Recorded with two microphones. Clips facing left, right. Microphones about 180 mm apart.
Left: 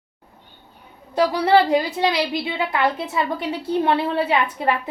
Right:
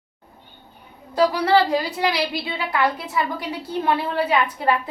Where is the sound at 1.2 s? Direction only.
25° left (ahead or behind).